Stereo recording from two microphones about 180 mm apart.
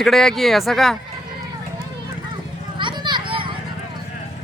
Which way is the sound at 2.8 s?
25° right (ahead or behind).